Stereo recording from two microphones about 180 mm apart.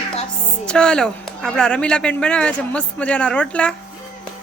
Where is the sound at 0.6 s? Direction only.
5° left (ahead or behind).